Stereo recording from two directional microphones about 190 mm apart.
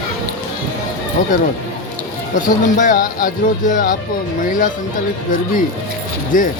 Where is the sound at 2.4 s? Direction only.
45° left (ahead or behind).